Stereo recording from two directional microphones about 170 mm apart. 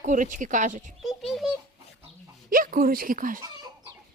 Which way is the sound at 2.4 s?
55° right (ahead or behind).